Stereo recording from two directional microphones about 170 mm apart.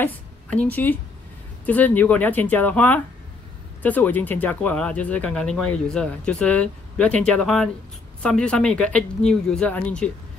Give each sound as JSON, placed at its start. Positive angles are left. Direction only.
{"t": 0.0, "sound": "a woman's voice", "side_deg": 10}